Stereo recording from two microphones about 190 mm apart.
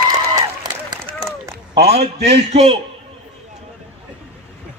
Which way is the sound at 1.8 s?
35° right (ahead or behind).